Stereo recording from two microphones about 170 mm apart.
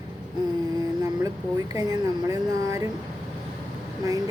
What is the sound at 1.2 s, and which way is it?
A woman's voice, 20° right (ahead or behind).